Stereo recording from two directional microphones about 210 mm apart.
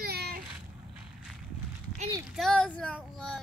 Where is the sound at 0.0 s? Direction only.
45° right (ahead or behind).